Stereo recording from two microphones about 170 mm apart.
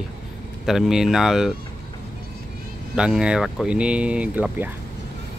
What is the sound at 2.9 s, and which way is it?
Speech, 5° right (ahead or behind).